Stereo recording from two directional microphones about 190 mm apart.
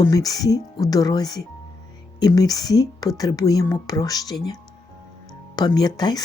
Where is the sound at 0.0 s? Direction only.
20° left (ahead or behind).